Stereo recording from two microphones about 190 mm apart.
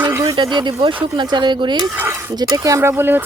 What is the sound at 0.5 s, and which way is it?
Speech, 25° right (ahead or behind).